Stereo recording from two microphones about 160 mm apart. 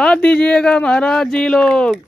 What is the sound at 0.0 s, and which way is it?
Speech, 5° left (ahead or behind).